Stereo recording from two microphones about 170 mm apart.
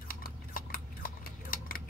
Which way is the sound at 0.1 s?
60° left (ahead or behind).